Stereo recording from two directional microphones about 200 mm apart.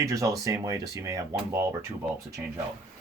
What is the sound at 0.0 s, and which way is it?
Speech, 15° right (ahead or behind).